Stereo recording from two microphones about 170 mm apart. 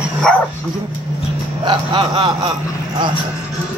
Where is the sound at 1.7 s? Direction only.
30° right (ahead or behind).